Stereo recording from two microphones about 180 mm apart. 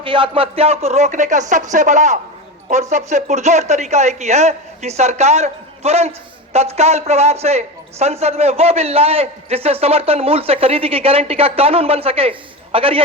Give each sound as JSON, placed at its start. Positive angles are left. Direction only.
{"t": 0.0, "sound": "a man's voice", "side_deg": -30}